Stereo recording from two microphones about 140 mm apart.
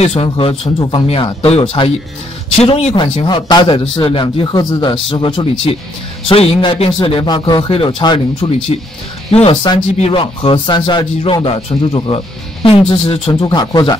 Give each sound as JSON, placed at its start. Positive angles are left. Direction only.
{"t": 0.0, "sound": "speech", "side_deg": 45}
{"t": 3.3, "sound": "speech", "side_deg": 30}
{"t": 13.3, "sound": "speech", "side_deg": 30}